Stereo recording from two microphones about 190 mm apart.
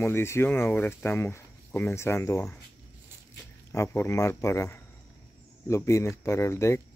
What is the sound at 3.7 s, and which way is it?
Speech, 15° left (ahead or behind).